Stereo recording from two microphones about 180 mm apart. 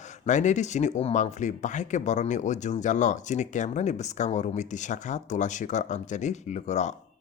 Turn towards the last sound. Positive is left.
turn(degrees=40)  # may be behind; listen again after turning